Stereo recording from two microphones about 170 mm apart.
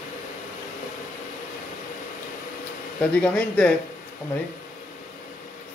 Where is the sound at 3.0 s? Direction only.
5° left (ahead or behind).